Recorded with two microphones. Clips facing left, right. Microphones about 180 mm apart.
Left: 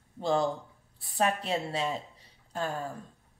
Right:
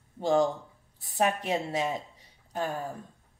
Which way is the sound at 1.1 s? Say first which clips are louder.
Right 1 dB; 15° right (ahead or behind).